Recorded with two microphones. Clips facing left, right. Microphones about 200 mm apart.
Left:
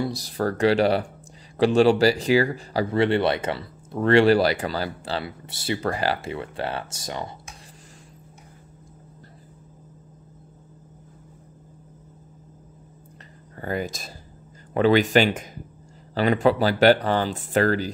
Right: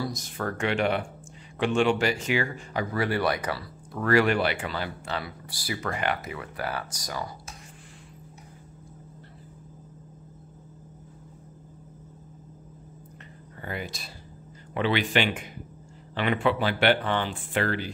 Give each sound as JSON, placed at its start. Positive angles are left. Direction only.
{"t": 0.0, "sound": "speech", "side_deg": 35}
{"t": 13.6, "sound": "speech", "side_deg": 45}